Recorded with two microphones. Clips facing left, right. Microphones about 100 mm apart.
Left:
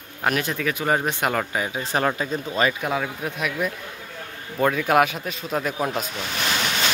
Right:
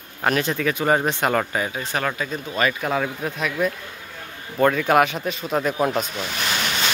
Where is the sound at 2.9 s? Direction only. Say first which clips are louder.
Right 2 dB; 10° left (ahead or behind).